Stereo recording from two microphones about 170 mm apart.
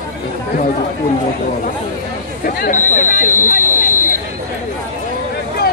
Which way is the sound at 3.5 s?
50° left (ahead or behind).